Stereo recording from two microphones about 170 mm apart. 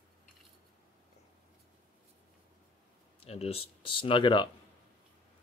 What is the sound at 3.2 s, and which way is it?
Speech, 35° left (ahead or behind).